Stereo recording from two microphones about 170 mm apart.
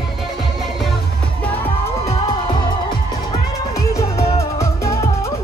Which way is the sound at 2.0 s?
30° left (ahead or behind).